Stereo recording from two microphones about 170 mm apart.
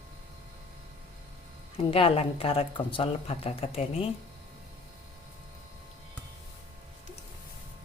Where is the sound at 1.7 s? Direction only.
35° left (ahead or behind).